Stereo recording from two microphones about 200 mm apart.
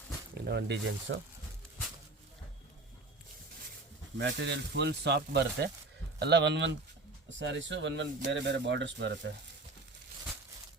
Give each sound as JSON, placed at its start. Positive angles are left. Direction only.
{"t": 0.3, "sound": "speech", "side_deg": -55}
{"t": 1.1, "sound": "speech", "side_deg": -65}
{"t": 4.2, "sound": "speech", "side_deg": -60}